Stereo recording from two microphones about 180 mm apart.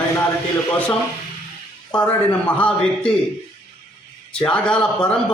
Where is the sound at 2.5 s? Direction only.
5° left (ahead or behind).